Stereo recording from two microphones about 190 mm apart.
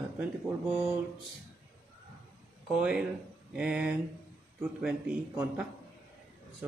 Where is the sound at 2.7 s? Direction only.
5° right (ahead or behind).